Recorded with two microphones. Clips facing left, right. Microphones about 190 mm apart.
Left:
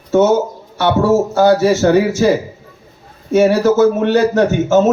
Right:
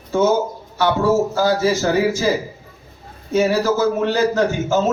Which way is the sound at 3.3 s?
65° left (ahead or behind).